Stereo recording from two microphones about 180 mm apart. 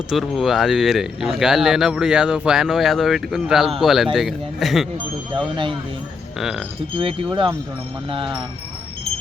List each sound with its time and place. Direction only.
0.1 s speech: centre (ahead or behind)
6.4 s speech: 5° right (ahead or behind)
6.9 s speech: 30° right (ahead or behind)